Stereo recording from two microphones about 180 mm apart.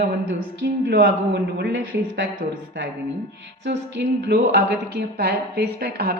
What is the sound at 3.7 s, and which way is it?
A woman's voice, 75° right (ahead or behind).